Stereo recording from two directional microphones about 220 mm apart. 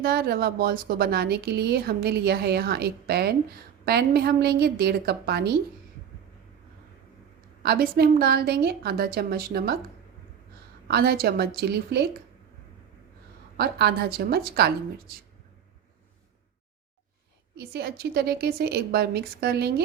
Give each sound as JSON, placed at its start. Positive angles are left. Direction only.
{"t": 0.0, "sound": "speech", "side_deg": -45}
{"t": 7.6, "sound": "speech", "side_deg": -45}
{"t": 10.8, "sound": "speech", "side_deg": -45}
{"t": 13.6, "sound": "speech", "side_deg": -45}
{"t": 17.6, "sound": "speech", "side_deg": -45}